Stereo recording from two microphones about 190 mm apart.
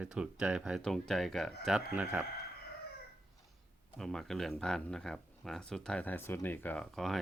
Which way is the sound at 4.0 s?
Centre (ahead or behind).